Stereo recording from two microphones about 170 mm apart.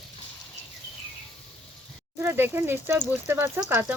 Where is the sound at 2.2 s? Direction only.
10° right (ahead or behind).